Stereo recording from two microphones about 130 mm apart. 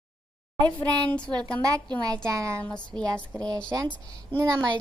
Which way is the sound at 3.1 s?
30° right (ahead or behind).